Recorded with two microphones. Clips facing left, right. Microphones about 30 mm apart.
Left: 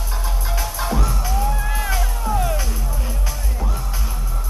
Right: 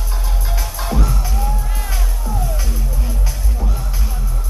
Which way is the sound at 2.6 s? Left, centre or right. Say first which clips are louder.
Even; centre.